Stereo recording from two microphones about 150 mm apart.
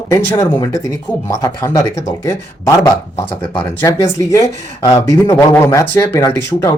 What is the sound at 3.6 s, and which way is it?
Speech, 20° left (ahead or behind).